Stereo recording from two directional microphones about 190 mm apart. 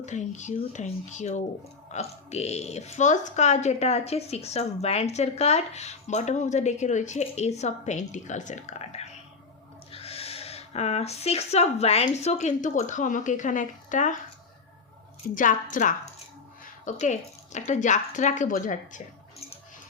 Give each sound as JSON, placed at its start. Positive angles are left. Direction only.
{"t": 0.0, "sound": "speech", "side_deg": 40}
{"t": 15.2, "sound": "speech", "side_deg": 50}